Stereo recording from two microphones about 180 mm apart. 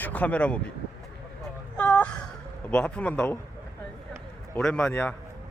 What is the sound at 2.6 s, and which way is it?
Speech, 5° left (ahead or behind).